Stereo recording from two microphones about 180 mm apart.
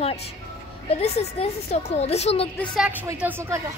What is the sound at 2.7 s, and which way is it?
Speech, 5° right (ahead or behind).